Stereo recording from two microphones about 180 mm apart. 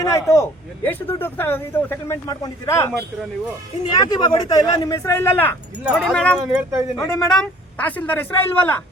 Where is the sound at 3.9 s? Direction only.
25° left (ahead or behind).